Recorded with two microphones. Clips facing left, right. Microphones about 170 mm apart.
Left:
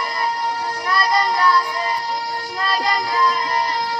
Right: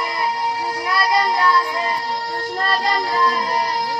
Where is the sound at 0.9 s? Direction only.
5° right (ahead or behind).